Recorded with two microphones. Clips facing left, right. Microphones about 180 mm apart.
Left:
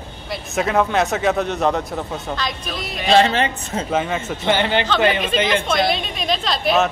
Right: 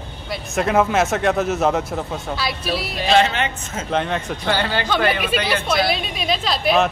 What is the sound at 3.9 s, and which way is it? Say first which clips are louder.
Speech: right 1 dB; 5° left (ahead or behind).